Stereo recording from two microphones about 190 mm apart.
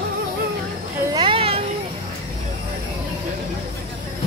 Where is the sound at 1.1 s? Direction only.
30° right (ahead or behind).